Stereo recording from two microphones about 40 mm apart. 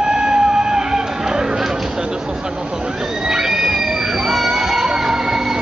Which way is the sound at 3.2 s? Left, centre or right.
Centre.